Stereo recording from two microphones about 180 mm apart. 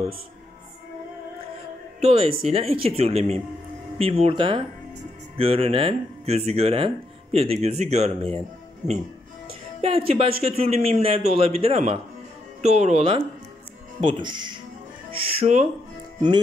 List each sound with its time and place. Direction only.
2.0 s speech: 30° right (ahead or behind)
8.8 s speech: 20° right (ahead or behind)
9.8 s speech: 35° right (ahead or behind)